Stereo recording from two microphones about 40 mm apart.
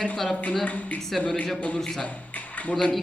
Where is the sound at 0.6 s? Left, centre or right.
Left.